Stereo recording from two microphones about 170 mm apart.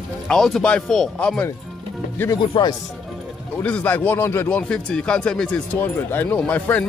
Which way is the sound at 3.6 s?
10° left (ahead or behind).